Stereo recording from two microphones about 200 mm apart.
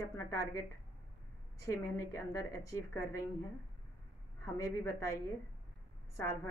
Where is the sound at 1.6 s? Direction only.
15° left (ahead or behind).